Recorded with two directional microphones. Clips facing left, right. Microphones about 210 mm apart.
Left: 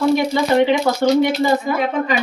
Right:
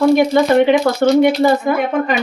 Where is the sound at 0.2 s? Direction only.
55° right (ahead or behind).